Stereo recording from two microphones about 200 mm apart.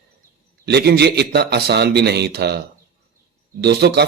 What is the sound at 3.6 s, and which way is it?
Speech, 55° right (ahead or behind).